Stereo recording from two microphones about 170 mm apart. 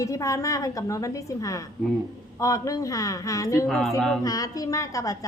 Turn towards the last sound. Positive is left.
turn(degrees=20)  # may be behind; listen again after turning